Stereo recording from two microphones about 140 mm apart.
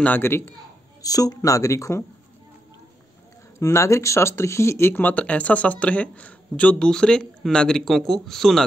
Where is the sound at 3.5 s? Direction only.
20° left (ahead or behind).